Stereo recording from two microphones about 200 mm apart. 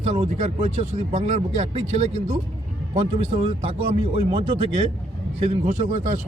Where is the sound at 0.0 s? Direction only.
35° right (ahead or behind).